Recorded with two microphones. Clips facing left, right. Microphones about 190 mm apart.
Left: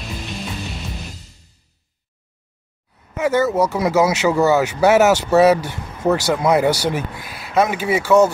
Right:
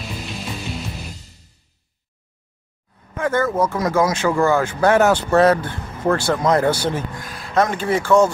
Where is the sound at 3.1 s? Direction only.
10° left (ahead or behind).